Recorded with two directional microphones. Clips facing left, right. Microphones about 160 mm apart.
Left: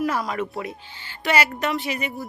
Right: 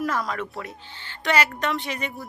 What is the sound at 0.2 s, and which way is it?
Speech, 20° left (ahead or behind).